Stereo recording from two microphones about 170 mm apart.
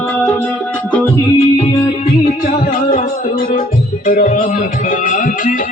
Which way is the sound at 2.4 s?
55° left (ahead or behind).